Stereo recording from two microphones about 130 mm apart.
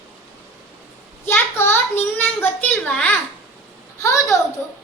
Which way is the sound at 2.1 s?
15° left (ahead or behind).